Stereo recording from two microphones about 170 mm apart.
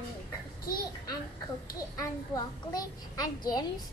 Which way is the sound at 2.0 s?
20° left (ahead or behind).